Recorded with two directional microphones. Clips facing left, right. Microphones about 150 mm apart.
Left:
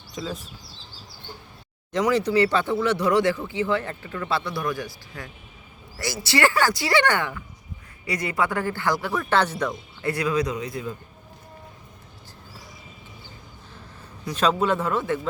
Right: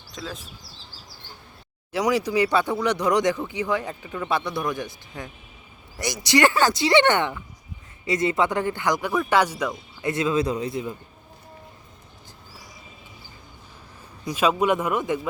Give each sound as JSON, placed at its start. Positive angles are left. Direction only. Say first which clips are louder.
{"t": 0.1, "sound": "speech", "louder": "left 3 dB", "side_deg": 0}
{"t": 1.9, "sound": "speech", "louder": "left 1 dB", "side_deg": -10}
{"t": 10.1, "sound": "speech", "louder": "right 1 dB", "side_deg": -25}
{"t": 14.3, "sound": "speech", "louder": "right 1 dB", "side_deg": -10}